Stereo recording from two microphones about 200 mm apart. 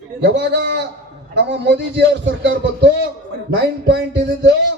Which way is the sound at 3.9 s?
55° right (ahead or behind).